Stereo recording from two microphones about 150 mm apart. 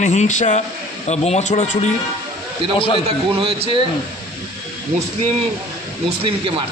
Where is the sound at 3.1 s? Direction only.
40° right (ahead or behind).